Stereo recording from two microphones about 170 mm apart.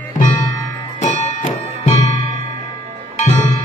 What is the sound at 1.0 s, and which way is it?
Music, 45° left (ahead or behind).